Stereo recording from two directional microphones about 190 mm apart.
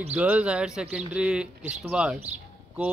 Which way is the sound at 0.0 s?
10° right (ahead or behind).